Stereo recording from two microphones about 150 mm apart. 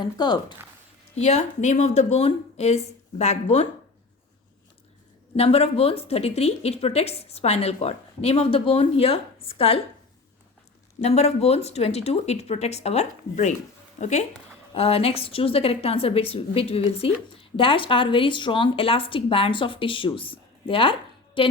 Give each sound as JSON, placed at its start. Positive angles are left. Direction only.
{"t": 0.0, "sound": "speech", "side_deg": 30}
{"t": 1.1, "sound": "a woman's voice", "side_deg": 45}
{"t": 5.4, "sound": "a woman's voice", "side_deg": 40}
{"t": 11.0, "sound": "a woman's voice", "side_deg": 45}